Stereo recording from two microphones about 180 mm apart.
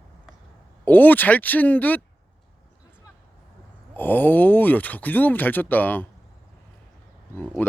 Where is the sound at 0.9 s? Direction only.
10° left (ahead or behind).